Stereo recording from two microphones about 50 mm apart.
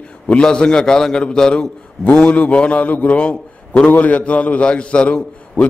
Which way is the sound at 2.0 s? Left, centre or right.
Left.